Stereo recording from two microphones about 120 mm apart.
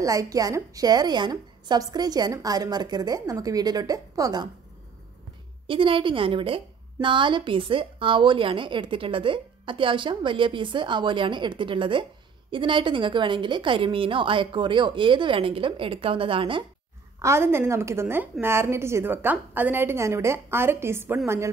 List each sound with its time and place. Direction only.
0.0 s a woman's voice: 30° right (ahead or behind)
5.7 s a woman's voice: 45° right (ahead or behind)
17.2 s a woman's voice: 20° right (ahead or behind)